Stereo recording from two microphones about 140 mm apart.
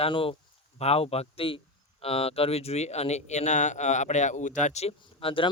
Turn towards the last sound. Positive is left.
turn(degrees=40)  # may be behind; listen again after turning